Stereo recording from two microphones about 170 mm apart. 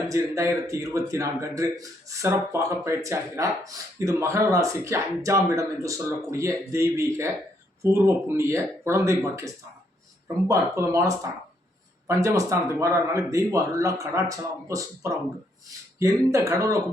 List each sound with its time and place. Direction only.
0.1 s a man's voice: 20° right (ahead or behind)